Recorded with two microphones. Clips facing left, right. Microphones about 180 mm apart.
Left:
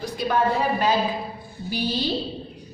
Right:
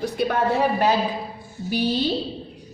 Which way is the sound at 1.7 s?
65° right (ahead or behind).